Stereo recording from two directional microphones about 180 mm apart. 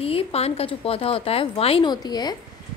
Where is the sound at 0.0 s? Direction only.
30° left (ahead or behind).